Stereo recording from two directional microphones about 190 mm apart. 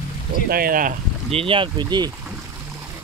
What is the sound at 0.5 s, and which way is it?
Speech, 50° right (ahead or behind).